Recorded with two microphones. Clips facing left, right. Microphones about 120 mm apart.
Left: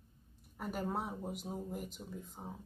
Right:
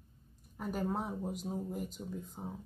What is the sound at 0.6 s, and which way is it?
Speech, 10° left (ahead or behind).